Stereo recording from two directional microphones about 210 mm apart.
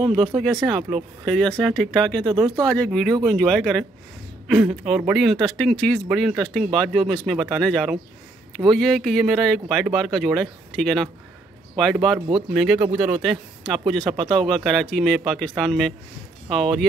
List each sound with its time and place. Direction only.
0.7 s speech: centre (ahead or behind)
2.2 s speech: 20° right (ahead or behind)
2.7 s speech: 5° left (ahead or behind)